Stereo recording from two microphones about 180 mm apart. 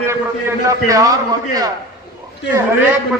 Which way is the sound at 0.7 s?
20° right (ahead or behind).